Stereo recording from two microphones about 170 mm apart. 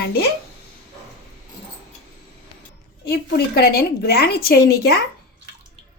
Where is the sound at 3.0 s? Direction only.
70° left (ahead or behind).